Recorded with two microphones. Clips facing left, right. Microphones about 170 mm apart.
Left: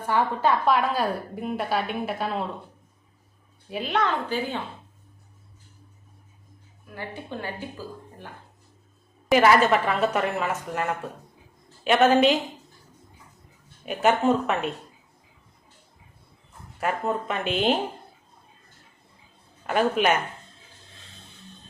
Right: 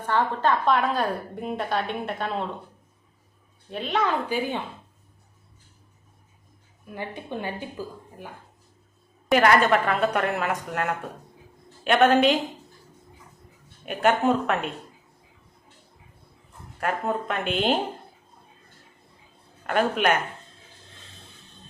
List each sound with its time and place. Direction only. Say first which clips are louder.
0.0 s a woman's voice: even; 10° left (ahead or behind)
3.7 s a woman's voice: even; 5° left (ahead or behind)
4.3 s a woman's voice: right 1 dB; 15° right (ahead or behind)
6.9 s a woman's voice: right 2 dB; 20° right (ahead or behind)
9.3 s a woman's voice: left 1 dB; 5° left (ahead or behind)
13.8 s a woman's voice: even; centre (ahead or behind)
16.8 s a woman's voice: even; centre (ahead or behind)
19.6 s a woman's voice: left 1 dB; 5° left (ahead or behind)